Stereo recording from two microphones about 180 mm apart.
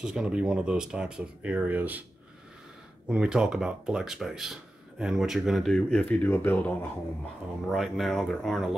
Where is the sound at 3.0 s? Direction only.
5° right (ahead or behind).